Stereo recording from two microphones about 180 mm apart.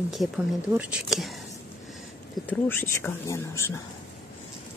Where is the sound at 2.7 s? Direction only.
10° left (ahead or behind).